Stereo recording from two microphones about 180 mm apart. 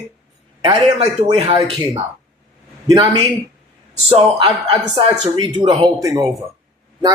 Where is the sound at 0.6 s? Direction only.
30° right (ahead or behind).